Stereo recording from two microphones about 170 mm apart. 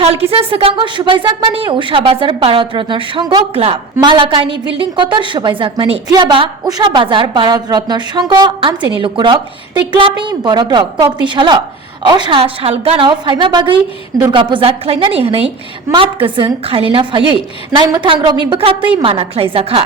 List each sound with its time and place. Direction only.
0.3 s a woman's voice: 35° right (ahead or behind)